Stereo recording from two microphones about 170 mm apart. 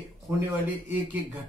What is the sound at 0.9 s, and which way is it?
Speech, 10° right (ahead or behind).